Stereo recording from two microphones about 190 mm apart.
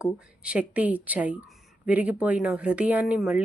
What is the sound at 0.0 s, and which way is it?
A woman's voice, 5° right (ahead or behind).